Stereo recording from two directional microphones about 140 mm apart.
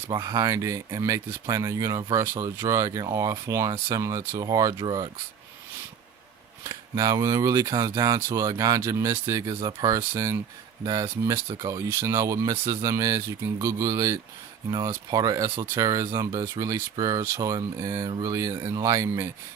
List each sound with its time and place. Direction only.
0.1 s speech: 30° right (ahead or behind)
6.9 s speech: 25° right (ahead or behind)
12.5 s speech: 35° right (ahead or behind)
12.8 s speech: 20° right (ahead or behind)